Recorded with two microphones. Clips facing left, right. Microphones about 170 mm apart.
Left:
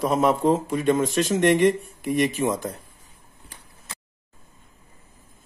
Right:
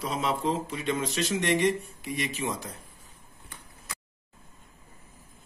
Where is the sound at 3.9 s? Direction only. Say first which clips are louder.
Even; 25° left (ahead or behind).